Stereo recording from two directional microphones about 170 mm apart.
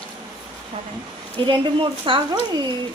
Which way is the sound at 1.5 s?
30° right (ahead or behind).